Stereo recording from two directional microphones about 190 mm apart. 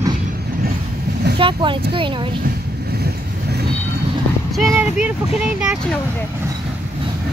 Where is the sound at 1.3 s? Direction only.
25° right (ahead or behind).